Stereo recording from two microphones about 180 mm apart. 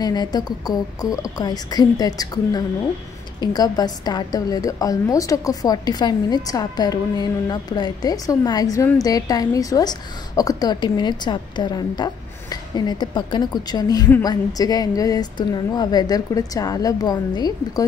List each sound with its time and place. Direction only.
0.0 s a woman's voice: 20° left (ahead or behind)